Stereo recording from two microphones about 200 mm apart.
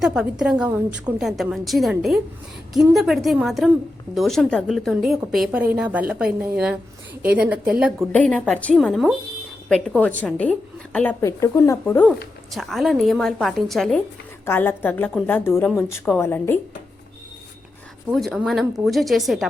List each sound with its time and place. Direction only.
0.0 s a woman's voice: 5° right (ahead or behind)
12.0 s a woman's voice: centre (ahead or behind)
18.1 s a woman's voice: centre (ahead or behind)